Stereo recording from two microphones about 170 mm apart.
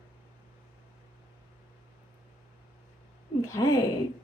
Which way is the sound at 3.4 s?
15° left (ahead or behind).